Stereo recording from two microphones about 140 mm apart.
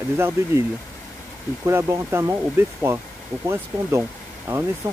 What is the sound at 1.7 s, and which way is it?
Speech, 15° right (ahead or behind).